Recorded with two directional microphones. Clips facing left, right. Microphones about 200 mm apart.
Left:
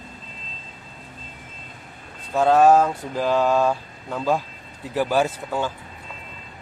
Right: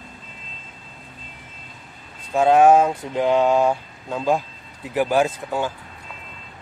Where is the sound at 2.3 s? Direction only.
15° right (ahead or behind).